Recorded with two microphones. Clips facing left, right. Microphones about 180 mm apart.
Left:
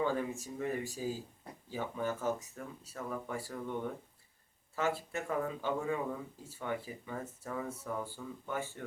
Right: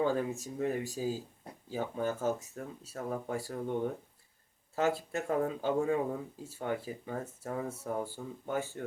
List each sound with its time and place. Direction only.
0.0 s speech: 40° right (ahead or behind)
1.0 s speech: 55° right (ahead or behind)
1.7 s speech: 40° right (ahead or behind)